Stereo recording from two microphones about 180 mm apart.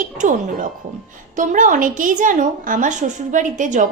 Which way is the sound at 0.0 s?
45° right (ahead or behind).